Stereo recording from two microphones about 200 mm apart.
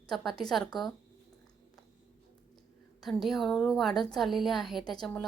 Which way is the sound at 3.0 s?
Centre (ahead or behind).